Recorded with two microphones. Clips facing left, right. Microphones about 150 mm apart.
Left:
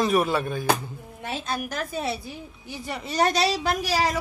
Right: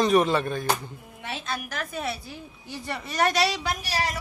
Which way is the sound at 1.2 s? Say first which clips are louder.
Left 3 dB; 40° left (ahead or behind).